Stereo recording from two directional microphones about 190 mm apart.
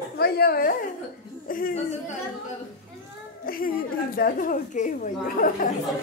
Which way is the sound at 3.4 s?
50° left (ahead or behind).